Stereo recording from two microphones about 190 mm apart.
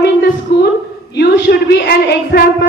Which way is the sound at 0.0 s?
60° left (ahead or behind).